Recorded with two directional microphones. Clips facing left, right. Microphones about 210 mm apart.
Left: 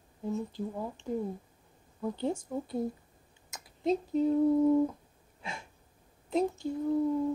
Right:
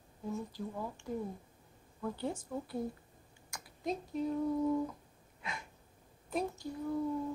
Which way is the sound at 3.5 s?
25° left (ahead or behind).